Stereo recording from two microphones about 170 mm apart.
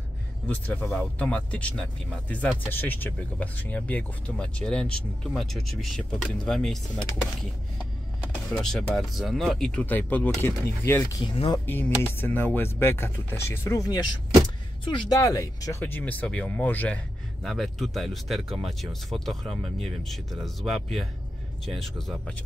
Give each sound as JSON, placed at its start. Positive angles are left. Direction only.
{"t": 0.5, "sound": "speech", "side_deg": 5}
{"t": 8.5, "sound": "speech", "side_deg": 0}
{"t": 11.2, "sound": "speech", "side_deg": 35}
{"t": 11.5, "sound": "speech", "side_deg": 10}